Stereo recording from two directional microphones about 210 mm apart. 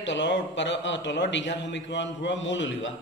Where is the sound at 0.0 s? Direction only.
55° left (ahead or behind).